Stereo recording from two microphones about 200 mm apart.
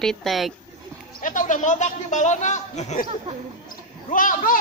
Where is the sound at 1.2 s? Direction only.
40° left (ahead or behind).